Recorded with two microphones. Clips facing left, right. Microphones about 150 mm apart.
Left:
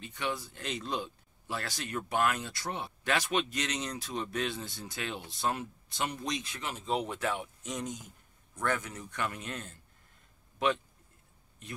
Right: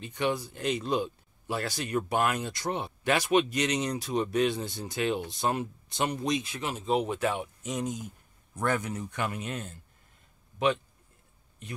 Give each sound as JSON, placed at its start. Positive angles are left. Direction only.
{"t": 0.0, "sound": "speech", "side_deg": -20}